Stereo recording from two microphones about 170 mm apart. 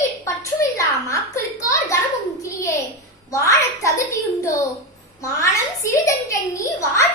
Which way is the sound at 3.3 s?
20° left (ahead or behind).